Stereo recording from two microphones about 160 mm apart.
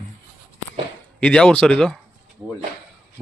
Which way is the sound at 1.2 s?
5° left (ahead or behind).